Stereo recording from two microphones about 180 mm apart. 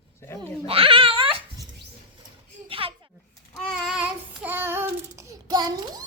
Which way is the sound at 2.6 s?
30° right (ahead or behind).